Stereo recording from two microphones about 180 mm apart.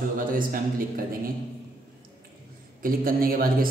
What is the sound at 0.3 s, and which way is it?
Speech, 50° right (ahead or behind).